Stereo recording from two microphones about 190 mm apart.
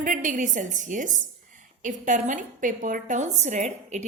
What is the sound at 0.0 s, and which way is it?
A woman's voice, 45° right (ahead or behind).